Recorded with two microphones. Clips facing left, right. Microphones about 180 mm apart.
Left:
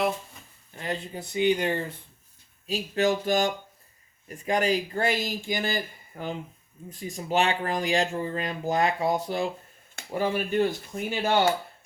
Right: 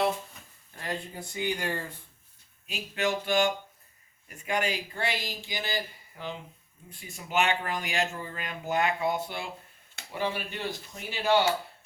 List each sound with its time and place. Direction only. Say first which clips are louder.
0.8 s speech: left 3 dB; 20° left (ahead or behind)
2.6 s speech: left 6 dB; 35° left (ahead or behind)